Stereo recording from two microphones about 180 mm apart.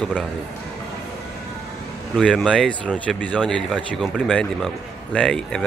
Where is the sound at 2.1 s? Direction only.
5° left (ahead or behind).